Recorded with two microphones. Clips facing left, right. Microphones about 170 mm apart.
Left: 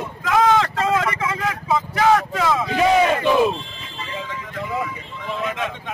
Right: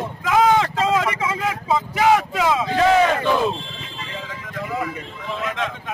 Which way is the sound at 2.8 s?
15° left (ahead or behind).